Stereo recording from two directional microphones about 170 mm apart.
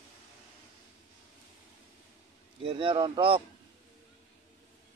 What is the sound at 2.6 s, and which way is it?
Speech, 30° right (ahead or behind).